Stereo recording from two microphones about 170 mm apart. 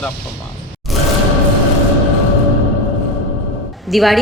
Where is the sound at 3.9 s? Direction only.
Centre (ahead or behind).